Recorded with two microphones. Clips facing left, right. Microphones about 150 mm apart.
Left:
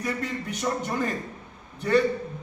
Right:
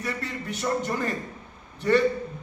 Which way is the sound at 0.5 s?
10° left (ahead or behind).